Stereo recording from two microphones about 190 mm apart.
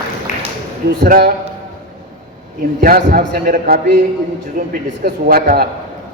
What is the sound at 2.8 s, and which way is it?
Speech, 50° right (ahead or behind).